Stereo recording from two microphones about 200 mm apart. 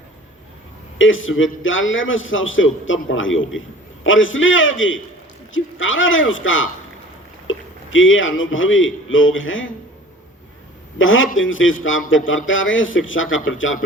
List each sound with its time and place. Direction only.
0.9 s a man's voice: 75° left (ahead or behind)
10.9 s a man's voice: 75° left (ahead or behind)